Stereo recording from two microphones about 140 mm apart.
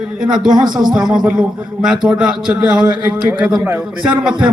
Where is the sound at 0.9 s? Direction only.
5° right (ahead or behind).